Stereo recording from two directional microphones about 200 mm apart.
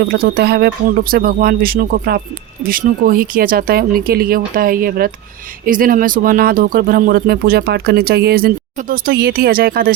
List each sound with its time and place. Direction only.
0.0 s speech: 55° right (ahead or behind)